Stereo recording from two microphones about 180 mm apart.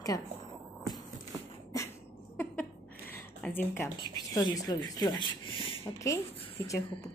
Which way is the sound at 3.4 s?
10° left (ahead or behind).